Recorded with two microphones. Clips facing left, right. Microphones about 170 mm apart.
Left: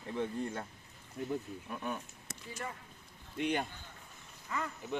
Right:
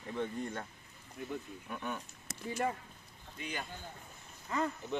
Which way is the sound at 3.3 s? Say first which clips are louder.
Left 9 dB; 65° left (ahead or behind).